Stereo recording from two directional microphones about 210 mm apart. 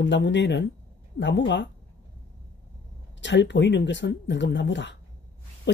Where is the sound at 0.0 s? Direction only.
60° left (ahead or behind).